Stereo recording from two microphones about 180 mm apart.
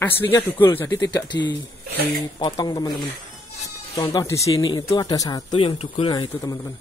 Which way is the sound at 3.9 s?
20° left (ahead or behind).